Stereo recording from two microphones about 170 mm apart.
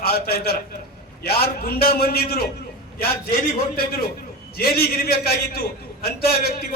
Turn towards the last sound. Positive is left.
turn(degrees=65)  # may be behind; listen again after turning